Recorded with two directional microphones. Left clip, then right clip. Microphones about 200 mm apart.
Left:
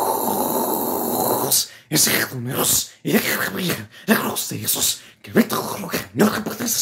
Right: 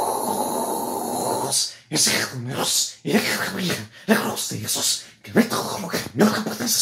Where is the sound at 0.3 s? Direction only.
70° left (ahead or behind); by 6.4 s 40° left (ahead or behind).